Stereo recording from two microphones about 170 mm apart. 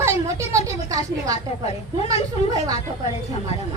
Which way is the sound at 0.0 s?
15° right (ahead or behind).